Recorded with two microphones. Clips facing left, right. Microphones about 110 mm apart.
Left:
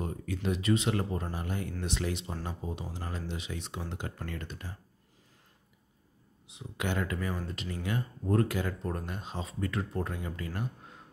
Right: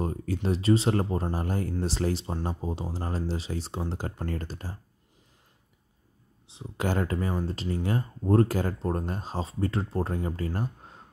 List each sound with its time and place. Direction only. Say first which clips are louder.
0.0 s speech: right 4 dB; 35° right (ahead or behind)
6.4 s speech: right 5 dB; 30° right (ahead or behind)